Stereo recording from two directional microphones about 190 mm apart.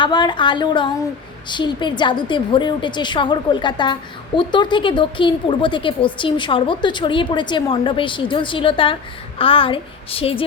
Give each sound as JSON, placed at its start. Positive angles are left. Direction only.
{"t": 0.0, "sound": "a woman's voice", "side_deg": 25}